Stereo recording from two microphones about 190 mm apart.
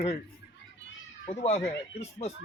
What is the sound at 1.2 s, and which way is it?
Speech, 35° left (ahead or behind).